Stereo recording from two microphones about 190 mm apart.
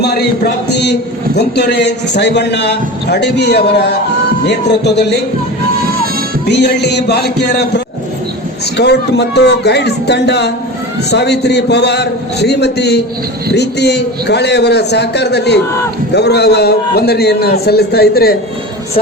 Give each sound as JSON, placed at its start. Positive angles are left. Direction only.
{"t": 0.0, "sound": "a man's voice", "side_deg": 55}
{"t": 6.5, "sound": "a man's voice", "side_deg": 60}
{"t": 8.8, "sound": "a man's voice", "side_deg": 60}